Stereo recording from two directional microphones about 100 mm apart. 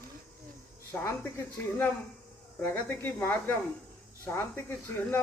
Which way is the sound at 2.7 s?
20° left (ahead or behind).